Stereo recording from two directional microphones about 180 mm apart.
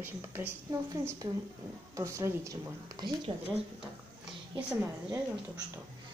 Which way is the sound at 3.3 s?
30° right (ahead or behind).